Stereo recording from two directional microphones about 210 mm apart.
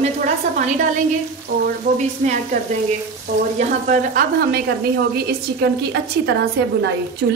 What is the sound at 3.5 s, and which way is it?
A woman's voice, 40° right (ahead or behind).